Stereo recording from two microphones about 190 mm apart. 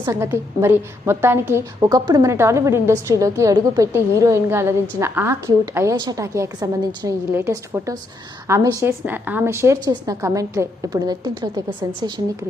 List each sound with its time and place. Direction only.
0.0 s a woman's voice: 15° right (ahead or behind)